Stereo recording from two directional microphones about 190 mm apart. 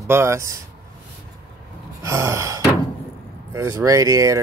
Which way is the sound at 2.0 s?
15° right (ahead or behind).